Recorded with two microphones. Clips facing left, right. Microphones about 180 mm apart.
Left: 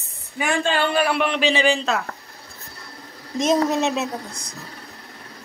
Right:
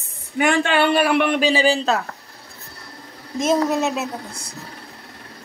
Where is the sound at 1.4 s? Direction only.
35° right (ahead or behind).